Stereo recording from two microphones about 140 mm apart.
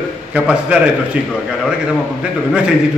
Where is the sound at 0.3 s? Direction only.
5° right (ahead or behind).